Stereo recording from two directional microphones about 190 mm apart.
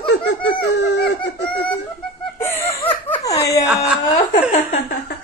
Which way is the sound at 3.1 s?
20° left (ahead or behind).